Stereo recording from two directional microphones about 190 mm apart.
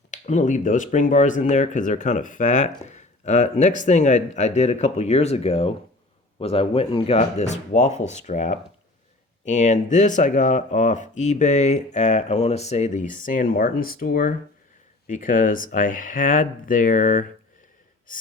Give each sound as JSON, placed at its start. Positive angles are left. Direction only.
{"t": 0.1, "sound": "speech", "side_deg": 40}